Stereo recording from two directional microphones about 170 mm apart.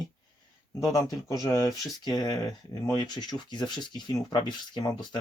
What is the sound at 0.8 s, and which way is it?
Speech, 20° left (ahead or behind).